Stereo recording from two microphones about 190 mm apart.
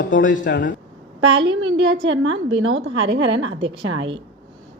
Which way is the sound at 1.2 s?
70° right (ahead or behind).